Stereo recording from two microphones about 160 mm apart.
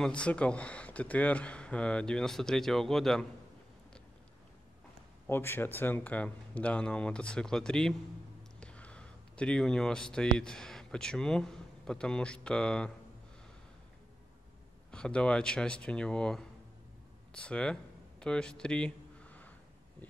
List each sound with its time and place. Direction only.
0.0 s speech: 5° left (ahead or behind)
5.2 s speech: 15° left (ahead or behind)
14.9 s speech: 5° left (ahead or behind)